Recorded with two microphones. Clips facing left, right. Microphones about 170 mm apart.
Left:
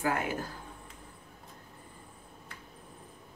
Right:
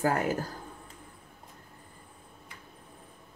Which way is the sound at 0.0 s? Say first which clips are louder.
Right 4 dB; 40° right (ahead or behind).